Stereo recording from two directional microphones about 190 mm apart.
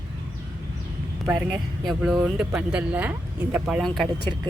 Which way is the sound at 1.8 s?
Centre (ahead or behind).